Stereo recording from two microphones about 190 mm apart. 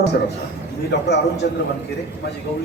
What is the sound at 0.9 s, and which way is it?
Speech, 65° left (ahead or behind).